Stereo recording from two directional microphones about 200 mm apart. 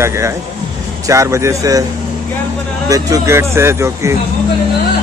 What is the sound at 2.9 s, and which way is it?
Speech, 15° right (ahead or behind).